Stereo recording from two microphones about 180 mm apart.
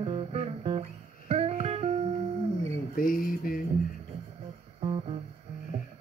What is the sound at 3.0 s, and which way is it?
Mantra, 50° left (ahead or behind).